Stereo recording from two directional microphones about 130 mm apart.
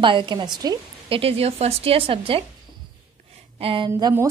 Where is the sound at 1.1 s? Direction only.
50° right (ahead or behind).